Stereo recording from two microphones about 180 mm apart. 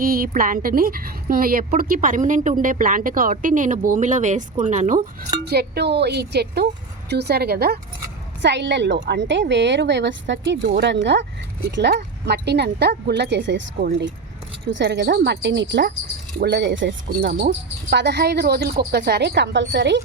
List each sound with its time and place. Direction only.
0.0 s a woman's voice: 55° right (ahead or behind)
5.5 s speech: 65° right (ahead or behind)
8.4 s speech: 75° right (ahead or behind); by 10.6 s 90° right
10.7 s speech: 70° right (ahead or behind)
14.7 s speech: 80° right